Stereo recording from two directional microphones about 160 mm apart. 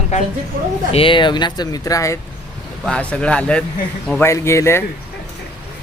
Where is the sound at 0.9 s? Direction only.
35° left (ahead or behind).